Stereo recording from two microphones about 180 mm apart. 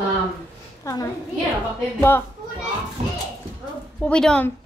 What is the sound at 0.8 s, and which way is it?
A child's voice, 15° left (ahead or behind).